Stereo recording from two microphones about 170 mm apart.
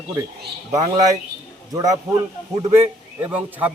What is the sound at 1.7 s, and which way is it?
Speech, 20° right (ahead or behind).